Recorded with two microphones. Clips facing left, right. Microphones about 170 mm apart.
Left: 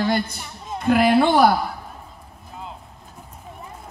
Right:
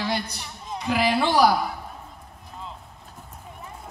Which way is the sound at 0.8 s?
55° left (ahead or behind).